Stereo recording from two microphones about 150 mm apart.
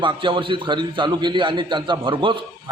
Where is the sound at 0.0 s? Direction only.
35° right (ahead or behind).